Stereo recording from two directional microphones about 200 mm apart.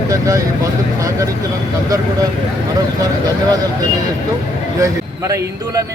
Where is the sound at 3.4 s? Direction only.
20° right (ahead or behind).